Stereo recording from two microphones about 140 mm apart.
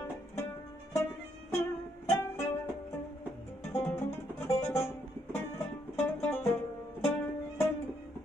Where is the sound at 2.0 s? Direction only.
20° left (ahead or behind).